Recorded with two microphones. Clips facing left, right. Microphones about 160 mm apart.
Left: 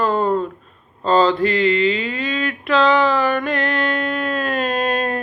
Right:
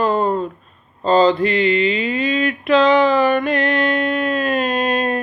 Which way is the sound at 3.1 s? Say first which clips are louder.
Right 3 dB; 10° right (ahead or behind).